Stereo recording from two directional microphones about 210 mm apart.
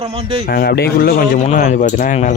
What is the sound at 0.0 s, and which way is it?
Speech, 25° right (ahead or behind).